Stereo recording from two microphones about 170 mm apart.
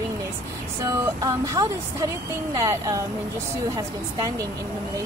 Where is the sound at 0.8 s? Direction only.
20° right (ahead or behind).